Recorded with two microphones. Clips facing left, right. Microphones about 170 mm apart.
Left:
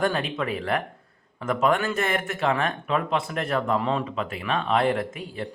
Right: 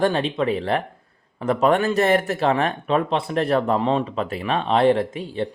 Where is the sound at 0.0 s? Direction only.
30° right (ahead or behind).